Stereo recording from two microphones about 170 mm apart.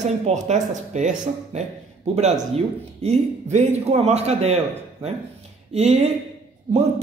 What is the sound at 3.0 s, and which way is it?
A man's voice, 40° right (ahead or behind).